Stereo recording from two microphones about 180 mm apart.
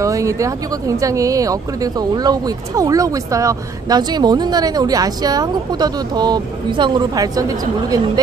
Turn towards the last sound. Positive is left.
turn(degrees=-20)  # may be behind; listen again after turning